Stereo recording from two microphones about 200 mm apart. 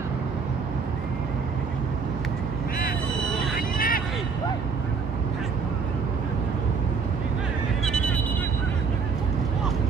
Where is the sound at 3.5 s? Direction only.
45° left (ahead or behind).